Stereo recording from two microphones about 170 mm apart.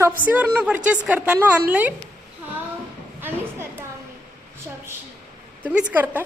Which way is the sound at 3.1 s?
10° right (ahead or behind).